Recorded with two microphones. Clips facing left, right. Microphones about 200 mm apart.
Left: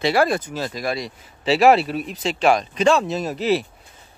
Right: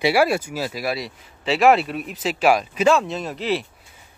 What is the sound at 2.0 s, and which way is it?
Speech, 5° right (ahead or behind).